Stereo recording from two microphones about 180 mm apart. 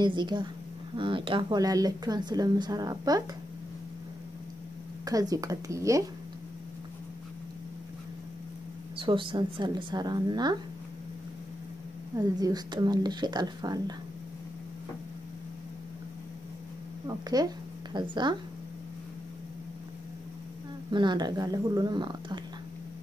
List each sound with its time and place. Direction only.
0.0 s a woman's voice: 25° right (ahead or behind)
5.0 s a woman's voice: 20° right (ahead or behind)
8.9 s a woman's voice: 30° right (ahead or behind)
12.2 s a woman's voice: 20° right (ahead or behind)
17.1 s a woman's voice: 20° right (ahead or behind)
20.9 s a woman's voice: 25° right (ahead or behind)